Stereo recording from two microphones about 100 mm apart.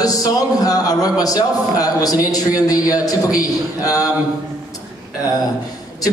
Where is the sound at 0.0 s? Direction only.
35° left (ahead or behind).